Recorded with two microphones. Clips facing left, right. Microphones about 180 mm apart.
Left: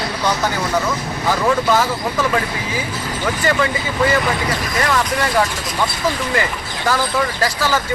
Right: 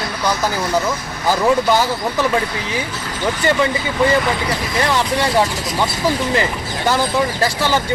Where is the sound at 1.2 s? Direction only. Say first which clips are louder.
Right 2 dB; 30° right (ahead or behind).